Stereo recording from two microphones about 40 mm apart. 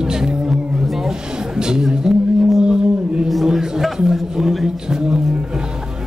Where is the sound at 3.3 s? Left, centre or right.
Centre.